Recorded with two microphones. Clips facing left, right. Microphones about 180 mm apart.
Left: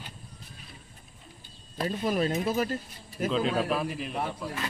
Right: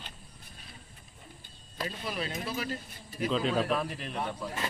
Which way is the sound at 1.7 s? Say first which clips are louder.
Left 8 dB; 45° left (ahead or behind).